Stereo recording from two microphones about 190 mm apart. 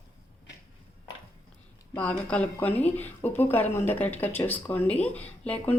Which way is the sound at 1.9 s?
5° left (ahead or behind).